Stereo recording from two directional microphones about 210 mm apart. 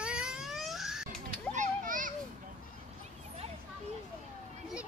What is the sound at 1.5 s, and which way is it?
Children playing, 35° right (ahead or behind).